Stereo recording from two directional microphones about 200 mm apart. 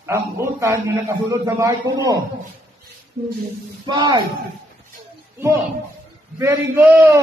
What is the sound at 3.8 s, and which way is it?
Speech, 25° right (ahead or behind).